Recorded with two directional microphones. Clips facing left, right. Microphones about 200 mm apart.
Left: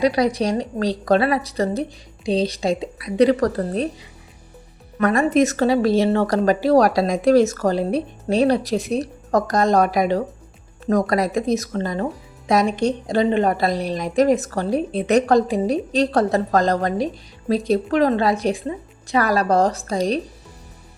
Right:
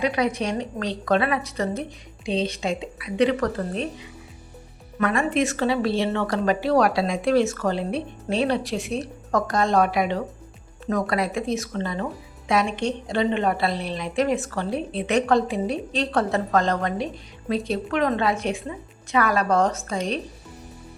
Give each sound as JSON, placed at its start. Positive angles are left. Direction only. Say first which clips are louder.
{"t": 0.0, "sound": "speech", "louder": "left 5 dB", "side_deg": 35}
{"t": 4.9, "sound": "speech", "louder": "left 5 dB", "side_deg": 40}